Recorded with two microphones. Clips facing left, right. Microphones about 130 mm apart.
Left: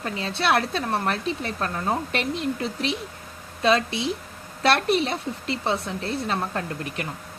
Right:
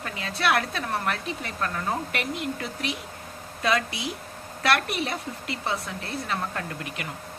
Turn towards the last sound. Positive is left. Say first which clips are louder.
# left 4 dB
turn(degrees=30)  # may be behind; listen again after turning